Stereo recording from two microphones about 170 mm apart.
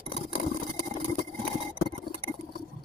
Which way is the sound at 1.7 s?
35° right (ahead or behind).